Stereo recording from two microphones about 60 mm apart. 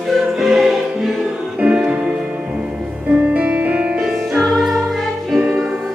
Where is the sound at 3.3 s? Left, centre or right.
Right.